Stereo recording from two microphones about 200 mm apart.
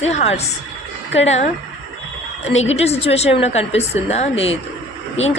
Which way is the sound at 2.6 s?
30° left (ahead or behind).